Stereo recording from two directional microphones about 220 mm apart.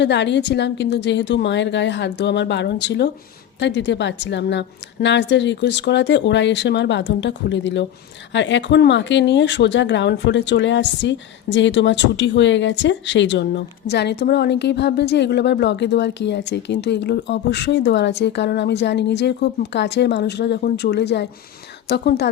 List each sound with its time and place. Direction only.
0.0 s speech: 50° left (ahead or behind)